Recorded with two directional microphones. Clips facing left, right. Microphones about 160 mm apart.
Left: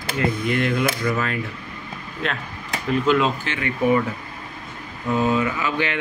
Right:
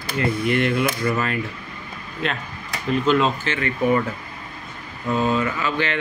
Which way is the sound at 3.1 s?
10° left (ahead or behind).